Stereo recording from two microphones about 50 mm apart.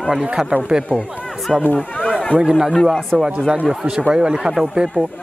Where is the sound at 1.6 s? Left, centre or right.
Left.